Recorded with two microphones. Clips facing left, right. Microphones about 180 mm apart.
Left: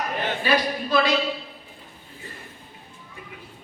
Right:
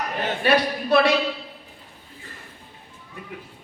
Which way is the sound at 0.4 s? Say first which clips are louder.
Right 4 dB; 65° right (ahead or behind).